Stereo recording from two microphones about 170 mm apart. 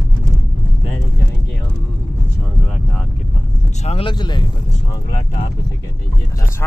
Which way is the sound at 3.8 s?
35° left (ahead or behind).